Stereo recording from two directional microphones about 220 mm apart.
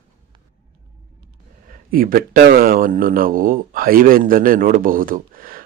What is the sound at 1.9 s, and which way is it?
Speech, 40° right (ahead or behind).